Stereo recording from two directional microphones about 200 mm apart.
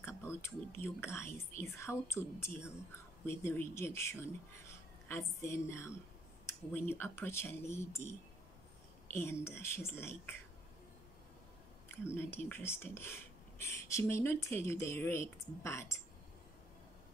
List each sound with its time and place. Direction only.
0.0 s speech: 10° left (ahead or behind)
9.1 s speech: 10° left (ahead or behind)
11.9 s speech: 10° left (ahead or behind)